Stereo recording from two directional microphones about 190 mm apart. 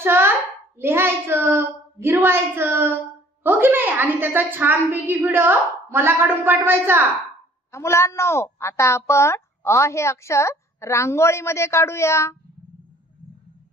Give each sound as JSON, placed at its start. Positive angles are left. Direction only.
{"t": 0.0, "sound": "a sound", "side_deg": -10}
{"t": 0.7, "sound": "a woman's voice", "side_deg": -10}
{"t": 7.7, "sound": "a woman's voice", "side_deg": 15}